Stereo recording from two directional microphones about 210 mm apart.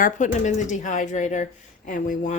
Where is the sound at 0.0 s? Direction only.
35° left (ahead or behind).